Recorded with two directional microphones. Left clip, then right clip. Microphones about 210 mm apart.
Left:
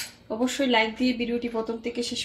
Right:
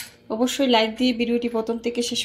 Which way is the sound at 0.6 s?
30° right (ahead or behind).